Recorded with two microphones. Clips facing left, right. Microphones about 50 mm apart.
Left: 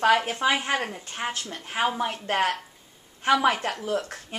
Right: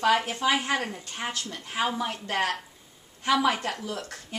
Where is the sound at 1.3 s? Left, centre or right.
Left.